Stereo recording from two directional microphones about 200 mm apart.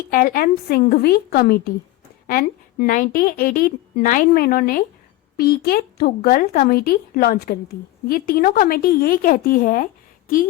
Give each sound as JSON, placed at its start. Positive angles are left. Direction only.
{"t": 0.1, "sound": "a woman's voice", "side_deg": 45}